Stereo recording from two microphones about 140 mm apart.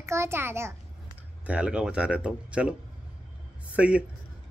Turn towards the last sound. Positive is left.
turn(degrees=-10)  # may be behind; listen again after turning